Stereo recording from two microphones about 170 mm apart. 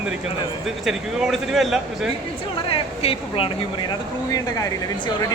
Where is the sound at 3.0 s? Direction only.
35° left (ahead or behind).